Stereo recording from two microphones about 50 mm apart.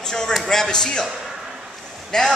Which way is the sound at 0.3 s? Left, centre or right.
Centre.